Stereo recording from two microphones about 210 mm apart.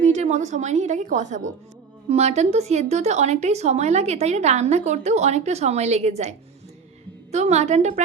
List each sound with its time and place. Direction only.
0.0 s speech: 35° right (ahead or behind)